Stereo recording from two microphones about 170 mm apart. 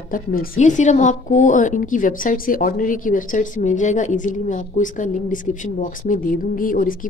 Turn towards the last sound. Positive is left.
turn(degrees=55)  # may be behind; listen again after turning